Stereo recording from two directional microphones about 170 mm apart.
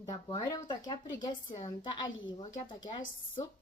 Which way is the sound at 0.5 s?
25° left (ahead or behind).